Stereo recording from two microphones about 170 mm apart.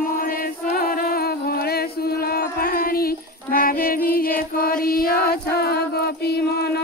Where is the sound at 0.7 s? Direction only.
60° left (ahead or behind).